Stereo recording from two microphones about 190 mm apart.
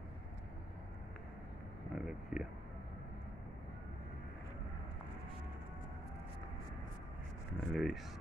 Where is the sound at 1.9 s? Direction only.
5° right (ahead or behind).